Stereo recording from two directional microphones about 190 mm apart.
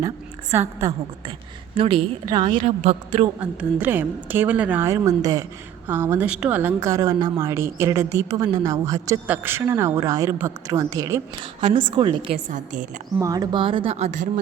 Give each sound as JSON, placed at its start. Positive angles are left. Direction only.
{"t": 0.5, "sound": "a woman's voice", "side_deg": -15}
{"t": 1.7, "sound": "a woman's voice", "side_deg": -30}
{"t": 3.4, "sound": "a woman's voice", "side_deg": -10}
{"t": 12.5, "sound": "a woman's voice", "side_deg": -40}
{"t": 13.1, "sound": "a woman's voice", "side_deg": -20}